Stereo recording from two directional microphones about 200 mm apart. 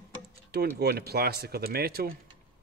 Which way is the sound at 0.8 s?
50° right (ahead or behind).